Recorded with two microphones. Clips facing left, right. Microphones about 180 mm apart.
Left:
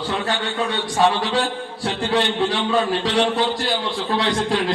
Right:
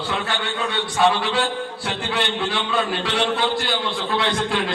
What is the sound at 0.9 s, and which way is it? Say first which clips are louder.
A man's voice: left 1 dB; 35° left (ahead or behind).